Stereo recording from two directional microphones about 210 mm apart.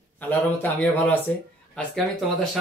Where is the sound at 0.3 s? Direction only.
10° left (ahead or behind).